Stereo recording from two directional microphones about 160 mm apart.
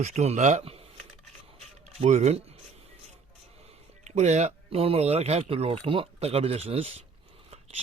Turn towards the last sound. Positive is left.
turn(degrees=-35)  # may be behind; listen again after turning